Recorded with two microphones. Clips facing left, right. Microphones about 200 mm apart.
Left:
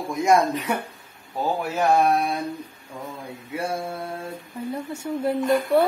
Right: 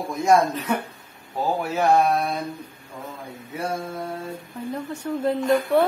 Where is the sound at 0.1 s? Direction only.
15° left (ahead or behind).